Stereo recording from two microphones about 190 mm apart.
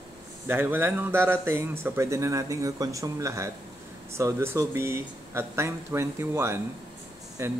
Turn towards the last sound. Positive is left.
turn(degrees=-15)  # may be behind; listen again after turning